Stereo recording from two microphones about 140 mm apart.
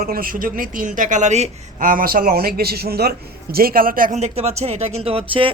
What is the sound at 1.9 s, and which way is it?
A man's voice, 85° right.